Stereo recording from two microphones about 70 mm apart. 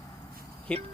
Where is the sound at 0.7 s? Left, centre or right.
Centre.